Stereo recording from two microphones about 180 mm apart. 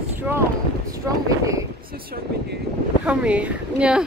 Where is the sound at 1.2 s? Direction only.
15° right (ahead or behind).